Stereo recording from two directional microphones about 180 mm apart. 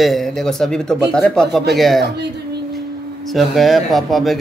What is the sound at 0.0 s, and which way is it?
Speech, centre (ahead or behind).